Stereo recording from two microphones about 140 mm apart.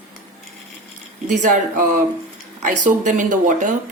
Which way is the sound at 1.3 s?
65° right (ahead or behind).